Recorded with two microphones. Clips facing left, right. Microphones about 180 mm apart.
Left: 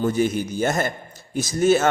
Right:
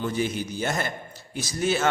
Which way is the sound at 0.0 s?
45° left (ahead or behind).